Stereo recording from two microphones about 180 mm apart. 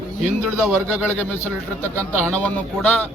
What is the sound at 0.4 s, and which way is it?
Speech, 5° right (ahead or behind).